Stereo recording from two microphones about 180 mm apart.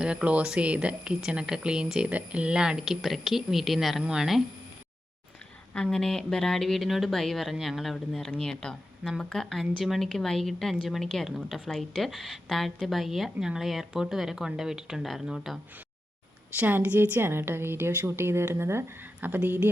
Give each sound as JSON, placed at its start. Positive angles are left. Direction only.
{"t": 0.0, "sound": "speech", "side_deg": -5}
{"t": 5.7, "sound": "speech", "side_deg": 5}
{"t": 16.6, "sound": "a woman's voice", "side_deg": -10}